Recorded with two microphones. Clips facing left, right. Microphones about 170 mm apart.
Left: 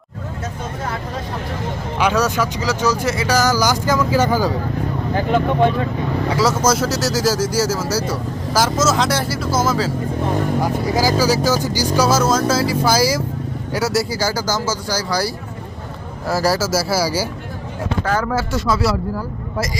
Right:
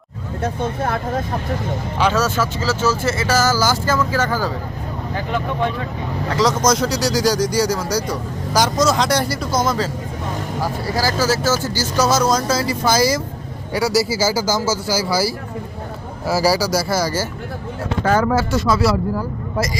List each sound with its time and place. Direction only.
2.0 s speech: 15° left (ahead or behind)
6.2 s speech: 10° left (ahead or behind)
10.8 s speech: 15° left (ahead or behind)
18.3 s speech: 20° right (ahead or behind)